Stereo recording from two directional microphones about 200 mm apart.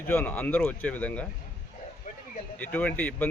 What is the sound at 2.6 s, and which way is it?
Speech, 10° left (ahead or behind).